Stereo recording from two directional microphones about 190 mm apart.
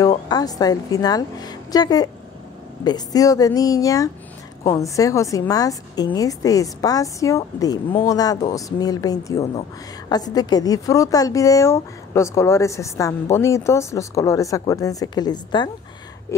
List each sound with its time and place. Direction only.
0.3 s a woman's voice: 20° left (ahead or behind)